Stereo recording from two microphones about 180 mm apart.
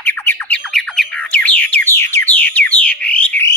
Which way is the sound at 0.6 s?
5° left (ahead or behind).